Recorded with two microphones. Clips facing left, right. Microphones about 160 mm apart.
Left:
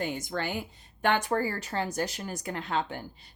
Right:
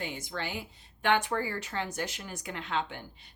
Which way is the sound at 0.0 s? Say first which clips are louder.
Left 5 dB; 45° left (ahead or behind).